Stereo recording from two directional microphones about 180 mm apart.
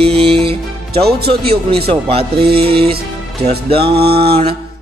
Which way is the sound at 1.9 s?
30° right (ahead or behind).